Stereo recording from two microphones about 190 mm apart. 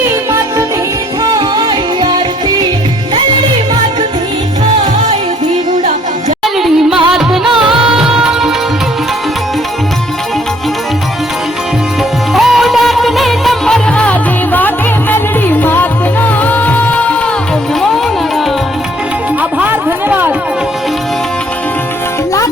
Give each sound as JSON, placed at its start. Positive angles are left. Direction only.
{"t": 1.2, "sound": "music", "side_deg": -20}
{"t": 7.1, "sound": "music", "side_deg": 0}
{"t": 12.3, "sound": "music", "side_deg": 0}
{"t": 19.4, "sound": "a sound", "side_deg": -10}